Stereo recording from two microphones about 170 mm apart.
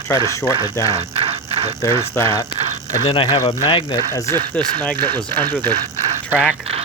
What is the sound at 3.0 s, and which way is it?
Speech, 30° left (ahead or behind).